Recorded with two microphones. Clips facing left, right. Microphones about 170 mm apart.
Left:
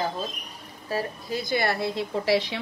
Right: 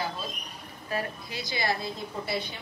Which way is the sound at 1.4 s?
60° left (ahead or behind).